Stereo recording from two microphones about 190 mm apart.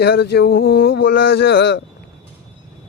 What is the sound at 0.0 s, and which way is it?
Speech, 60° left (ahead or behind).